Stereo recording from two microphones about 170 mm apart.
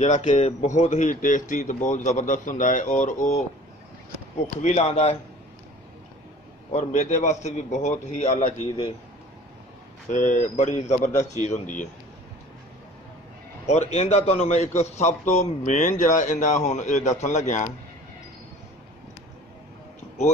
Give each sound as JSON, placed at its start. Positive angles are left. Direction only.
{"t": 0.0, "sound": "speech", "side_deg": 45}
{"t": 4.6, "sound": "a man's voice", "side_deg": 40}
{"t": 6.7, "sound": "speech", "side_deg": 45}
{"t": 10.0, "sound": "speech", "side_deg": 45}
{"t": 13.7, "sound": "a man's voice", "side_deg": 40}